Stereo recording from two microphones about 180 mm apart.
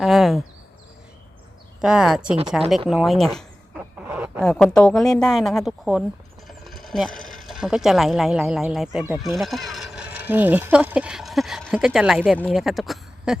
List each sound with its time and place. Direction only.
0.0 s speech: centre (ahead or behind)
1.8 s speech: 5° right (ahead or behind)
3.3 s a sound: 5° right (ahead or behind)
4.4 s speech: 5° left (ahead or behind)